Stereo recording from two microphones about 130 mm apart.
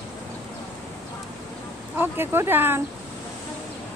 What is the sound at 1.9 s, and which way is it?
Speech, 15° right (ahead or behind).